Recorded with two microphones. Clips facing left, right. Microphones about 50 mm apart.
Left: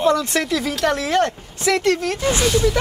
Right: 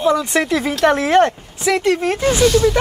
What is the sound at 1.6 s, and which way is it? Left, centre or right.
Speech, centre.